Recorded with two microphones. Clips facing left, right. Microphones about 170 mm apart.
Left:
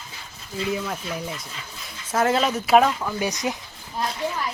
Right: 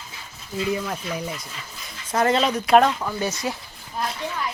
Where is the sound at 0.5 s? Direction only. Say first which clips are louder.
Right 1 dB; centre (ahead or behind).